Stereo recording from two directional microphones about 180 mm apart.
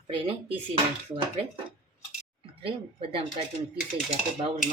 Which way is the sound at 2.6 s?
30° right (ahead or behind).